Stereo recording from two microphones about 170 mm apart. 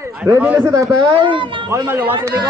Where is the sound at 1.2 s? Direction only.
30° right (ahead or behind).